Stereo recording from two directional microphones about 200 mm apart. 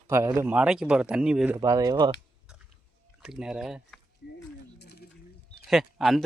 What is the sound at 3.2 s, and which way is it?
Speech, 5° right (ahead or behind).